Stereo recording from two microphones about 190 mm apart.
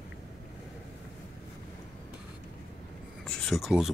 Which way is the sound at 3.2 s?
5° left (ahead or behind).